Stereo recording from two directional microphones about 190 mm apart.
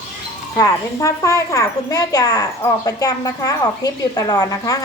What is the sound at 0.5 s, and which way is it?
A woman's voice, 15° left (ahead or behind).